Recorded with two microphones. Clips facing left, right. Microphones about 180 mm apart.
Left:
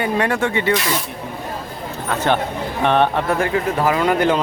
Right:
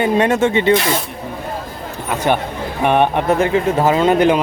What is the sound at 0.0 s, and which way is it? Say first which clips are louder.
Speech: right 5 dB; 25° right (ahead or behind).